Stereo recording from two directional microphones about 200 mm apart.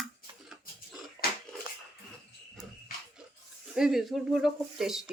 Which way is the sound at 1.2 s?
20° right (ahead or behind).